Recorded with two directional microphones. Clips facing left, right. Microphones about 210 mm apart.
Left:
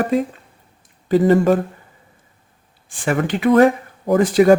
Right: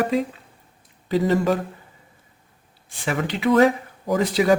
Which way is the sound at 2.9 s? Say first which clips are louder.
Left 5 dB; 50° left (ahead or behind).